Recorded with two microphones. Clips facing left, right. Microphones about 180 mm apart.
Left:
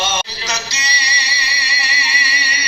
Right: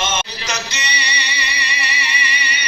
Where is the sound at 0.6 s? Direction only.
35° left (ahead or behind).